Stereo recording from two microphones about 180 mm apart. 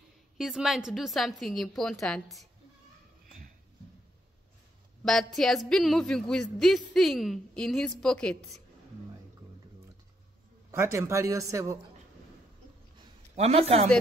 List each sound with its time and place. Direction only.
0.4 s a woman's voice: centre (ahead or behind)
5.0 s a woman's voice: centre (ahead or behind)
10.7 s a woman's voice: 15° right (ahead or behind)
13.4 s a man's voice: 35° right (ahead or behind)